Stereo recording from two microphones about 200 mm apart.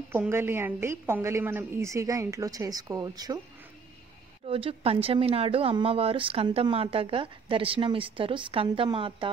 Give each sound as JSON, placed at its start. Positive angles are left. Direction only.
{"t": 0.1, "sound": "a woman's voice", "side_deg": -10}
{"t": 4.5, "sound": "speech", "side_deg": -30}